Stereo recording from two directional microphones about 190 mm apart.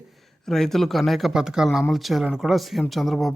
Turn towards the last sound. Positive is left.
turn(degrees=0)  # may be behind; listen again after turning